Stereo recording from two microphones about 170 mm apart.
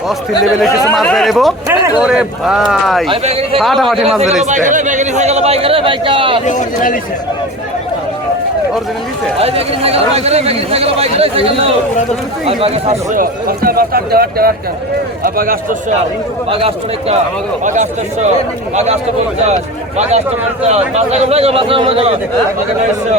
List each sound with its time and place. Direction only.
0.7 s speech: 20° left (ahead or behind)
0.9 s speech: centre (ahead or behind)
1.6 s speech: 15° right (ahead or behind)
2.0 s speech: 5° right (ahead or behind)
3.1 s a man's voice: 35° right (ahead or behind)
3.6 s speech: centre (ahead or behind)
4.4 s a man's voice: 45° right (ahead or behind); by 6.4 s 30° right (ahead or behind)
6.4 s speech: 45° left (ahead or behind)
9.4 s a man's voice: 35° right (ahead or behind)
13.1 s speech: 60° right (ahead or behind)
16.5 s a man's voice: 35° right (ahead or behind)
17.6 s speech: 45° right (ahead or behind)
20.0 s a man's voice: 40° right (ahead or behind)